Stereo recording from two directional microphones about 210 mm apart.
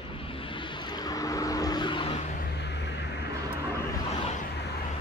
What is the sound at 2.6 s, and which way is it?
Vehicle, 55° left (ahead or behind).